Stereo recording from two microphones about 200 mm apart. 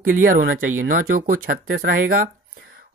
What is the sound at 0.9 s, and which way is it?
Speech, 45° right (ahead or behind).